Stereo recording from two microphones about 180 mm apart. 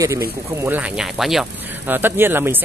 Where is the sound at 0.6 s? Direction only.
10° right (ahead or behind).